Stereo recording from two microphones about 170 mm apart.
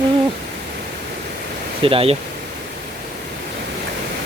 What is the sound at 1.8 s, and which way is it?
Speech, 35° right (ahead or behind).